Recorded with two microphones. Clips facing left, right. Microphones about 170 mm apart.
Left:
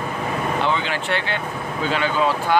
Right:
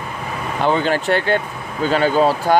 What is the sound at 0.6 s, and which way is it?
Speech, 45° right (ahead or behind).